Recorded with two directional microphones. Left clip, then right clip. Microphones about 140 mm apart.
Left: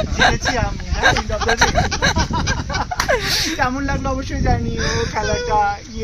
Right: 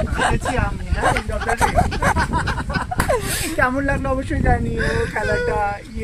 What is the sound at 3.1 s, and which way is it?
Speech, 35° left (ahead or behind).